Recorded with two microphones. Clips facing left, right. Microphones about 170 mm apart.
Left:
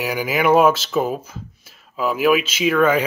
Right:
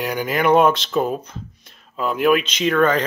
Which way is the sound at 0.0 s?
5° left (ahead or behind).